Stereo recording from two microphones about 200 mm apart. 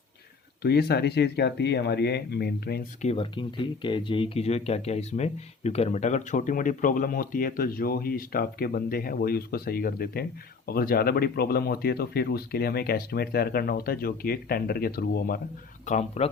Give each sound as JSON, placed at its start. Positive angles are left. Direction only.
{"t": 0.6, "sound": "speech", "side_deg": 55}
{"t": 3.0, "sound": "speech", "side_deg": 30}
{"t": 15.9, "sound": "speech", "side_deg": 35}